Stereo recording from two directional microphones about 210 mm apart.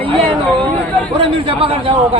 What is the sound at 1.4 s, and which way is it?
Speech, 25° right (ahead or behind).